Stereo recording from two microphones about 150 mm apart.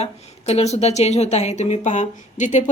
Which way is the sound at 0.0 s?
45° left (ahead or behind).